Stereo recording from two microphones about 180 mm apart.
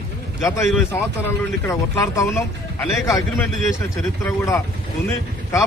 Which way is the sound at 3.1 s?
Centre (ahead or behind).